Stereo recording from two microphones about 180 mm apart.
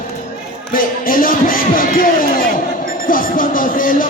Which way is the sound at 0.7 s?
50° left (ahead or behind).